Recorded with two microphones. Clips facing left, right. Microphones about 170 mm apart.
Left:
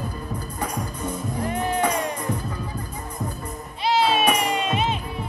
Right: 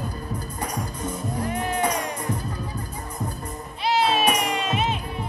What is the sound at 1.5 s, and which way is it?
Music, 30° left (ahead or behind).